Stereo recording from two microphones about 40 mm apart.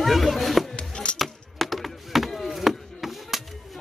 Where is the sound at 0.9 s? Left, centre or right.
Left.